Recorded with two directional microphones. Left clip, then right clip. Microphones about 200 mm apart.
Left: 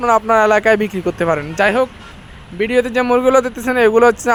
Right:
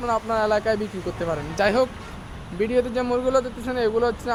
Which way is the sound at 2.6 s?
15° left (ahead or behind).